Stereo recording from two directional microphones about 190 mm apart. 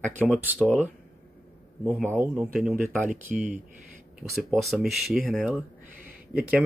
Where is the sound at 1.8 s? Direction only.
10° right (ahead or behind).